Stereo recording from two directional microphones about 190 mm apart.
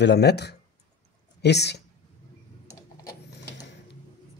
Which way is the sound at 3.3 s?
65° left (ahead or behind).